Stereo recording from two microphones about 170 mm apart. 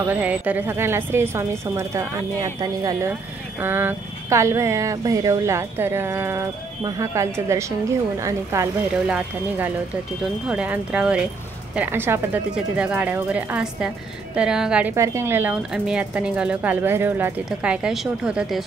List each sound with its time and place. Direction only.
0.0 s speech: 10° right (ahead or behind)
9.0 s speech: 5° right (ahead or behind)